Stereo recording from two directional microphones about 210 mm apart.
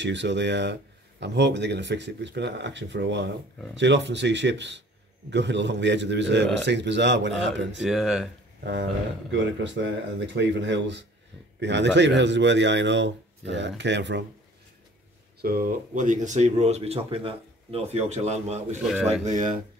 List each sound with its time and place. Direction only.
0.0 s a man's voice: 55° right (ahead or behind)
7.8 s speech: centre (ahead or behind)
9.3 s a man's voice: 60° right (ahead or behind)
15.4 s speech: 45° right (ahead or behind)